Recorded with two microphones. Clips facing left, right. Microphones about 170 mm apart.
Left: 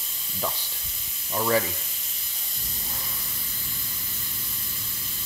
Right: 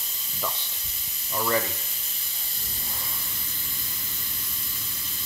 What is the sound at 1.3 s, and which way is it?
Speech, 10° left (ahead or behind).